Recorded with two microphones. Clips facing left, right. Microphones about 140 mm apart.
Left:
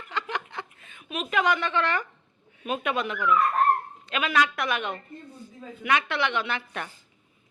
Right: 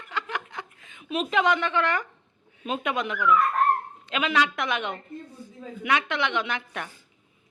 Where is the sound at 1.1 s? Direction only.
25° right (ahead or behind).